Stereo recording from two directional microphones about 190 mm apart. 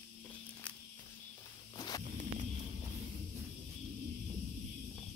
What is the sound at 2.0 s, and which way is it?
Music, 40° right (ahead or behind).